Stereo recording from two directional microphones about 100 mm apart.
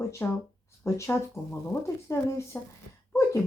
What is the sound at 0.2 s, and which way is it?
A child's voice, 20° left (ahead or behind).